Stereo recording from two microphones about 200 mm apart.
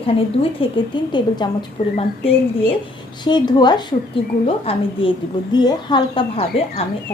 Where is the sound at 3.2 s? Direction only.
20° left (ahead or behind).